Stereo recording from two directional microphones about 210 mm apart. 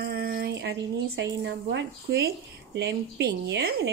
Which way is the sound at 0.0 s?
45° right (ahead or behind).